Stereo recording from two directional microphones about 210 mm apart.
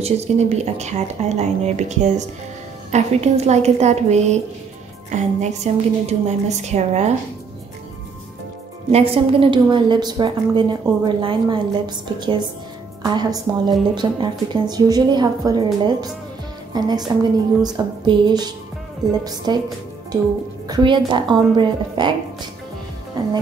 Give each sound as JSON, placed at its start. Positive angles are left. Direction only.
{"t": 0.0, "sound": "speech", "side_deg": -30}
{"t": 8.9, "sound": "a woman's voice", "side_deg": -25}
{"t": 16.7, "sound": "a woman's voice", "side_deg": -20}
{"t": 20.6, "sound": "a woman's voice", "side_deg": -20}